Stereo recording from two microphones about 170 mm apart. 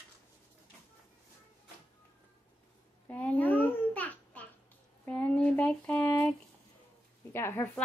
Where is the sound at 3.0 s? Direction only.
10° left (ahead or behind).